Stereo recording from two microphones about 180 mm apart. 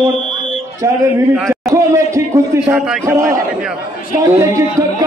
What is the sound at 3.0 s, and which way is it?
Speech, 15° right (ahead or behind).